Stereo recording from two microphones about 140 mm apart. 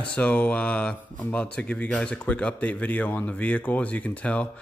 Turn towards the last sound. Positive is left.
turn(degrees=10)  # may be behind; listen again after turning